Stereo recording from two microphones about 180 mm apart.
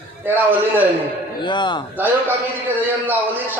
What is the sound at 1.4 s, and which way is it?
Speech, 25° left (ahead or behind).